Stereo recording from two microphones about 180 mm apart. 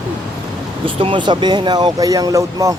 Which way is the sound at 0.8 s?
30° right (ahead or behind).